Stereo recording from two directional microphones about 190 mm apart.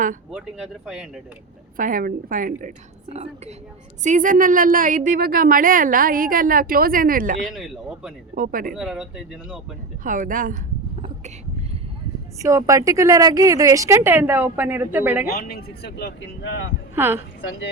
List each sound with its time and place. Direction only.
0.3 s speech: 5° right (ahead or behind)
1.7 s a woman's voice: 45° right (ahead or behind)
7.4 s speech: centre (ahead or behind)
8.4 s a woman's voice: 45° right (ahead or behind)
8.7 s speech: 5° right (ahead or behind)
10.0 s a woman's voice: 45° right (ahead or behind)
12.4 s a woman's voice: 15° right (ahead or behind)
15.3 s speech: 50° left (ahead or behind)
16.9 s a woman's voice: 10° right (ahead or behind)